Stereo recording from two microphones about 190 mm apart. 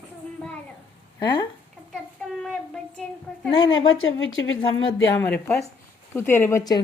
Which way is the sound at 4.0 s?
90° left.